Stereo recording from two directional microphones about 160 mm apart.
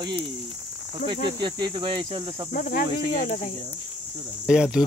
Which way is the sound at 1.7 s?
35° right (ahead or behind).